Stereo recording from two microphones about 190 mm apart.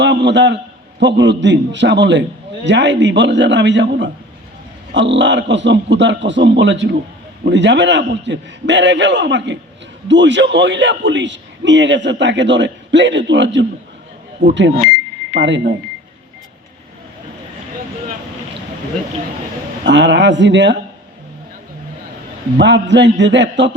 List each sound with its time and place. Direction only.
0.0 s a man's voice: 70° right (ahead or behind)
14.4 s speech: 40° right (ahead or behind)
15.3 s speech: 70° right (ahead or behind)
19.8 s a man's voice: 70° right (ahead or behind)
22.5 s a man's voice: 70° right (ahead or behind)